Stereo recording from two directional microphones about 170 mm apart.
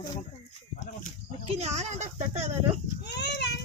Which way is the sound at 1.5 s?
40° right (ahead or behind).